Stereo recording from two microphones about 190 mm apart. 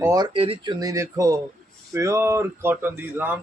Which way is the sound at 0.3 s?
30° right (ahead or behind).